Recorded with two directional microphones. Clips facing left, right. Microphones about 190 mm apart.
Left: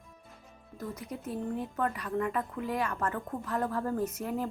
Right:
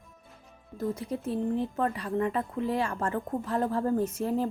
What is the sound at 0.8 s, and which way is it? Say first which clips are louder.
Speech: right 7 dB; 30° right (ahead or behind).